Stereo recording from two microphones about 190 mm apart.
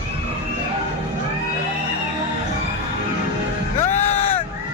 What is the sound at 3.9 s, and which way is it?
Music, 35° left (ahead or behind).